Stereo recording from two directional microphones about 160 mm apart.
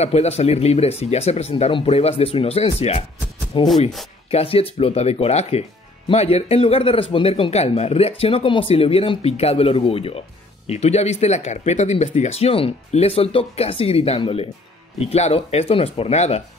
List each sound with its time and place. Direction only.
0.0 s speech: 40° left (ahead or behind)